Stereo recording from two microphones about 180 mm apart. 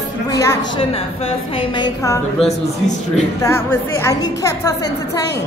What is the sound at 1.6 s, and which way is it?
Speech, 25° left (ahead or behind).